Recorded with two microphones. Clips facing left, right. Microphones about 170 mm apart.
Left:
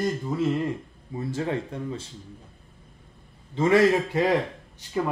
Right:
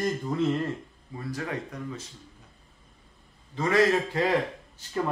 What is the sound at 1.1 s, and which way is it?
Speech, 25° left (ahead or behind).